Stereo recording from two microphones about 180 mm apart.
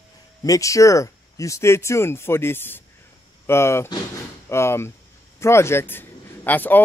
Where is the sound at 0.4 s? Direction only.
20° left (ahead or behind).